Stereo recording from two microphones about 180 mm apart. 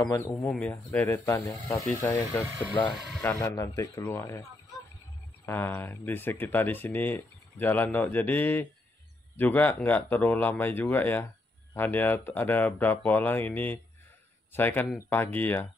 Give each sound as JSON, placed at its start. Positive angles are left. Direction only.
{"t": 0.1, "sound": "speech", "side_deg": 20}
{"t": 0.5, "sound": "speech", "side_deg": 5}